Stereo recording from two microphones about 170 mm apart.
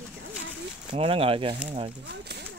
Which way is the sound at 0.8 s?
35° right (ahead or behind).